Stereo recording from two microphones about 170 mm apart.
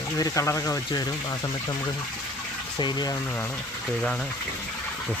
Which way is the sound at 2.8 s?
25° left (ahead or behind).